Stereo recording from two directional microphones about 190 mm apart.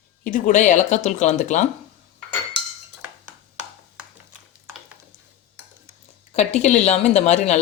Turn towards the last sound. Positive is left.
turn(degrees=35)  # may be behind; listen again after turning